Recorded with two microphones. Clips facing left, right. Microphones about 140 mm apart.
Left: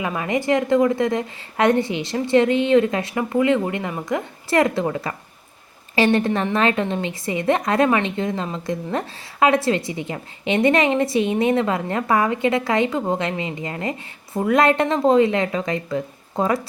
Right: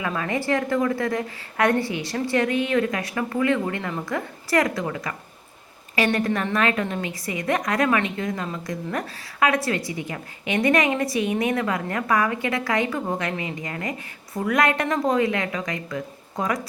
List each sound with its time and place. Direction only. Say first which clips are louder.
0.0 s a woman's voice: left 3 dB; 20° left (ahead or behind)